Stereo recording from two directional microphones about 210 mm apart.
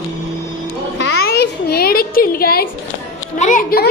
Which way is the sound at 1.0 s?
50° left (ahead or behind).